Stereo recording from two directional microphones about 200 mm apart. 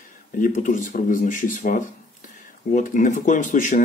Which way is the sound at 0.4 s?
40° left (ahead or behind).